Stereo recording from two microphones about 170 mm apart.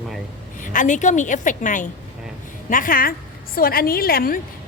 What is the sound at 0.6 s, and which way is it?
A woman's voice, 50° left (ahead or behind).